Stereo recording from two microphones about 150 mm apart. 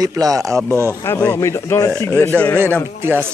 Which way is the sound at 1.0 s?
10° left (ahead or behind).